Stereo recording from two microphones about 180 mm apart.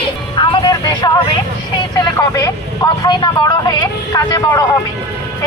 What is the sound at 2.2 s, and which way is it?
Vehicle, 20° left (ahead or behind).